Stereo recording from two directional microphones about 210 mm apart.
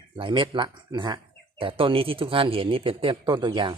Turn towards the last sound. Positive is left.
turn(degrees=-20)  # may be behind; listen again after turning